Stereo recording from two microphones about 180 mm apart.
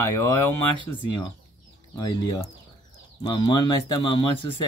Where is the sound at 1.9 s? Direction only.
20° left (ahead or behind).